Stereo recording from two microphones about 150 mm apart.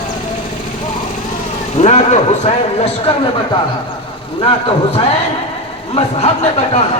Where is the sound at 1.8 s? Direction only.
50° left (ahead or behind).